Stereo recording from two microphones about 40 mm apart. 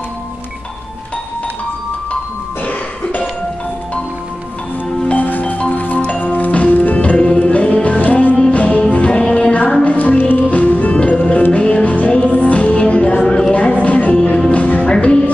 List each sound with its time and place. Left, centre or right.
2.6 s cough: left
5.1 s music: left
5.9 s music: left
6.2 s music: left
7.0 s music: left
10.1 s music: left
10.5 s music: left
12.1 s music: left
12.4 s music: left
13.2 s a sound: centre
13.5 s music: left